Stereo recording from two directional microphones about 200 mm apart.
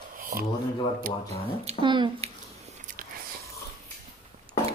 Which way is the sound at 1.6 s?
30° right (ahead or behind).